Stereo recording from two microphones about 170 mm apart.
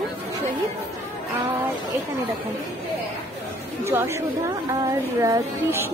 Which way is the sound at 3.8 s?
15° right (ahead or behind).